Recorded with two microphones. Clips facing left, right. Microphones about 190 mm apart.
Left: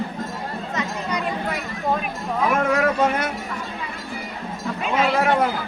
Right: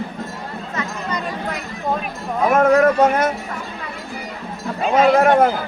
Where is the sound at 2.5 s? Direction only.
45° right (ahead or behind).